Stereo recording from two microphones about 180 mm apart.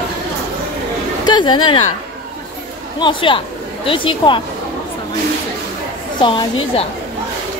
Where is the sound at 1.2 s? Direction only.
25° left (ahead or behind).